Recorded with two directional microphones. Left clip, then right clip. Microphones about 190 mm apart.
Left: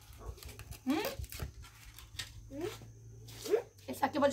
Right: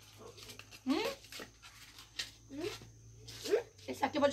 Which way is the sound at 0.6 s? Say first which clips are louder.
Even; 20° left (ahead or behind).